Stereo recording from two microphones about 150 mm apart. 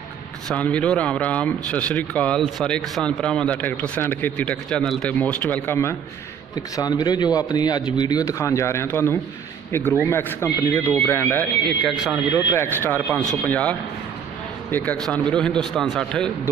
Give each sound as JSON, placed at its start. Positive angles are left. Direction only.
{"t": 0.5, "sound": "speech", "side_deg": 10}
{"t": 6.5, "sound": "a man's voice", "side_deg": 25}
{"t": 11.8, "sound": "a man's voice", "side_deg": 0}
{"t": 12.4, "sound": "speech", "side_deg": 15}
{"t": 15.0, "sound": "a man's voice", "side_deg": 5}